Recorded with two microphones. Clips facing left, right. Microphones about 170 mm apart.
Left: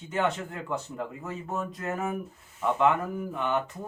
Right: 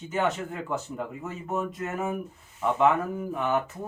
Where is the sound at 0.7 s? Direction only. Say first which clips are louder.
Left 1 dB; centre (ahead or behind).